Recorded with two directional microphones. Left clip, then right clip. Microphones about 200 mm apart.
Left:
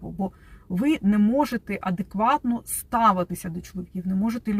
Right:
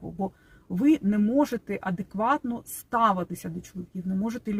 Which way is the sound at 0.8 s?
15° right (ahead or behind).